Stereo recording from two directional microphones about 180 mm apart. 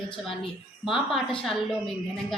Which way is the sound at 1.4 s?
Centre (ahead or behind).